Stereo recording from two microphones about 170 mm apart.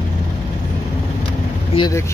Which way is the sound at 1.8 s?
20° left (ahead or behind).